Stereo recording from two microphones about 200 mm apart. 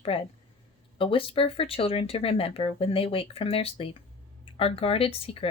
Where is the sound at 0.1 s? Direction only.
25° left (ahead or behind).